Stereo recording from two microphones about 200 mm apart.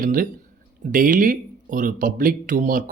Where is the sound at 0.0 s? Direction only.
45° right (ahead or behind).